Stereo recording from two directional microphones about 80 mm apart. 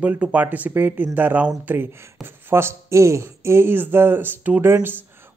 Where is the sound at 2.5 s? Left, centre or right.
Right.